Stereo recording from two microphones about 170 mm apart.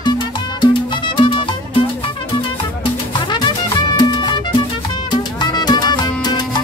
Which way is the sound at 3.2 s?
25° left (ahead or behind).